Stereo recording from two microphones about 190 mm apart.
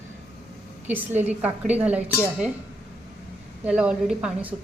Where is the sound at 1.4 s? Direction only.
10° right (ahead or behind).